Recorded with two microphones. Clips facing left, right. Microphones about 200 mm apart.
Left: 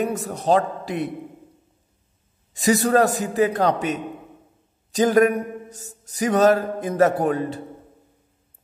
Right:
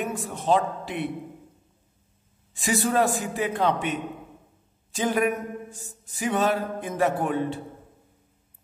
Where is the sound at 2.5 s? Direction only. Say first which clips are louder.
Left 6 dB; 40° left (ahead or behind).